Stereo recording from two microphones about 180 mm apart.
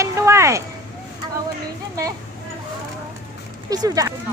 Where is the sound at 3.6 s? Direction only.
20° right (ahead or behind).